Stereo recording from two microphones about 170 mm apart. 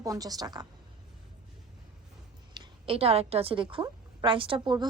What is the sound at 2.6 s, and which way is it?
A woman's voice, 30° right (ahead or behind).